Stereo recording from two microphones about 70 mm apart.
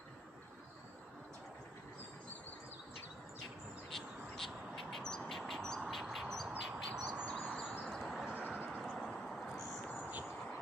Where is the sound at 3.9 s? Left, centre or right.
Centre.